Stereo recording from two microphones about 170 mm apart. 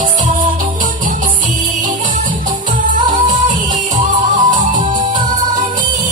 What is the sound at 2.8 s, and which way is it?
Music, 50° right (ahead or behind).